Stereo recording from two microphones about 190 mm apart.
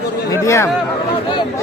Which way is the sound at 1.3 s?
25° left (ahead or behind).